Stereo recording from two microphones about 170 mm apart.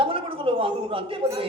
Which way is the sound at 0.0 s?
30° right (ahead or behind).